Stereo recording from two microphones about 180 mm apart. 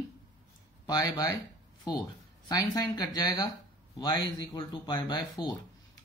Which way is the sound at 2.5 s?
20° left (ahead or behind).